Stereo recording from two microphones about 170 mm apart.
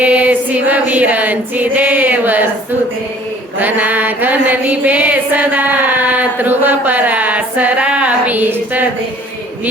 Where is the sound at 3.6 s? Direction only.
10° right (ahead or behind).